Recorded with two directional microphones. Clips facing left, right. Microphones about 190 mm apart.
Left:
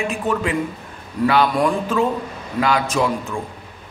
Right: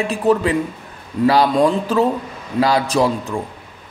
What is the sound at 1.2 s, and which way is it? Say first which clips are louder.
Speech: right 4 dB; 25° right (ahead or behind).